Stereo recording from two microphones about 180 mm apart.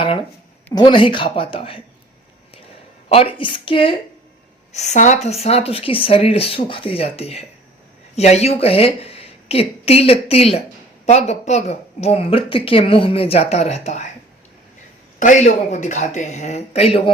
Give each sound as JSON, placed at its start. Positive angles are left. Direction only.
{"t": 0.7, "sound": "a woman's voice", "side_deg": 25}
{"t": 3.1, "sound": "a woman's voice", "side_deg": 30}
{"t": 4.7, "sound": "a woman's voice", "side_deg": 40}
{"t": 15.2, "sound": "a woman's voice", "side_deg": 45}